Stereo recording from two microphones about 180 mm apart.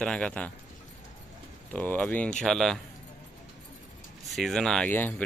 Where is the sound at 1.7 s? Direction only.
10° left (ahead or behind).